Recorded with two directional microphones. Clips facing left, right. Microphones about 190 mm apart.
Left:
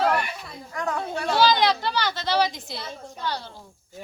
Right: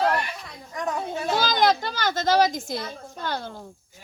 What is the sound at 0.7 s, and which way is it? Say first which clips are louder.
Speech: even; 20° right (ahead or behind).